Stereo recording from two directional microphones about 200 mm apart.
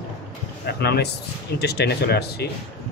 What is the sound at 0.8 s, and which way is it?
A man's voice, 55° left (ahead or behind).